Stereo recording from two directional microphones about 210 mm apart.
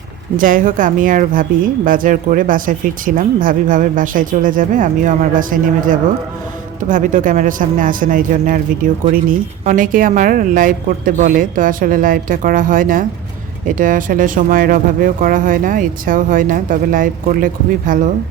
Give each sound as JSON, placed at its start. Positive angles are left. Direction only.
{"t": 0.3, "sound": "speech", "side_deg": -40}